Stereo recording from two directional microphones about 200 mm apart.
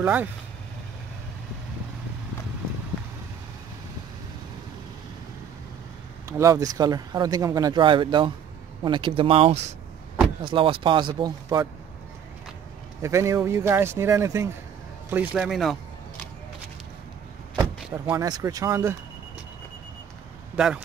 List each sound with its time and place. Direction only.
0.0 s speech: 10° right (ahead or behind)
6.2 s speech: 15° right (ahead or behind)
13.0 s speech: 15° right (ahead or behind)
18.1 s speech: 15° right (ahead or behind)
20.5 s speech: 5° right (ahead or behind)